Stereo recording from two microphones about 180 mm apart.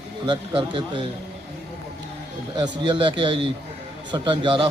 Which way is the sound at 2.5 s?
25° right (ahead or behind).